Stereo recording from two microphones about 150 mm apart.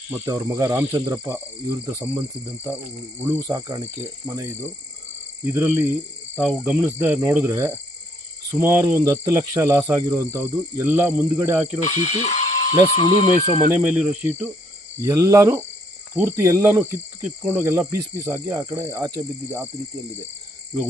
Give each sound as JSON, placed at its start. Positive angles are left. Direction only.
{"t": 0.3, "sound": "speech", "side_deg": -20}
{"t": 3.2, "sound": "speech", "side_deg": -15}
{"t": 3.4, "sound": "speech", "side_deg": -25}
{"t": 11.9, "sound": "speech", "side_deg": 50}
{"t": 13.0, "sound": "speech", "side_deg": 30}
{"t": 13.7, "sound": "speech", "side_deg": -10}